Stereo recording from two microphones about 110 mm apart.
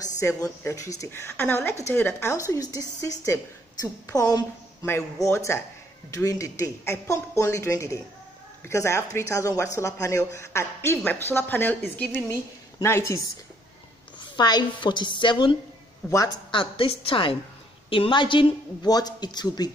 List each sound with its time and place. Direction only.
0.0 s a woman's voice: 30° left (ahead or behind)
4.8 s a woman's voice: 25° left (ahead or behind)
14.3 s a woman's voice: 40° left (ahead or behind)
16.0 s a woman's voice: 5° left (ahead or behind)
16.5 s a woman's voice: 55° left (ahead or behind)
18.9 s speech: 35° left (ahead or behind)